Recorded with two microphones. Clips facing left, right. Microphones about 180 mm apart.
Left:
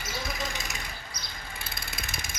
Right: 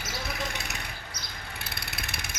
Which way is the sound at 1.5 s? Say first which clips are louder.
Right 1 dB; 65° right (ahead or behind).